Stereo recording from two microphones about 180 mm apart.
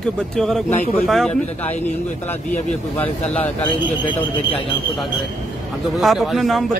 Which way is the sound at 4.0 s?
25° left (ahead or behind).